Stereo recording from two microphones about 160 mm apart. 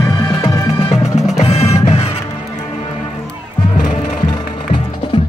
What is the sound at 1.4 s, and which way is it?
Music, 40° left (ahead or behind).